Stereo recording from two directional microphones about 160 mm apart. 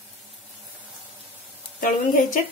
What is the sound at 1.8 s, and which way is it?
Speech, 50° left (ahead or behind).